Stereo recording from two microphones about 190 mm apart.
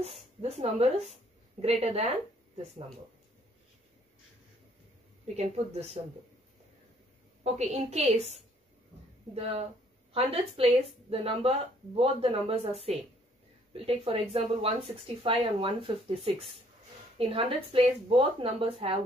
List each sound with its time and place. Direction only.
0.4 s a woman's voice: 35° right (ahead or behind)
5.3 s a woman's voice: 35° right (ahead or behind)
7.4 s a woman's voice: 35° right (ahead or behind)
10.1 s a woman's voice: 30° right (ahead or behind)